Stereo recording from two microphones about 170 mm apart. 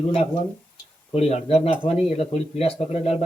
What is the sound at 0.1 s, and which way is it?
Speech, 35° left (ahead or behind).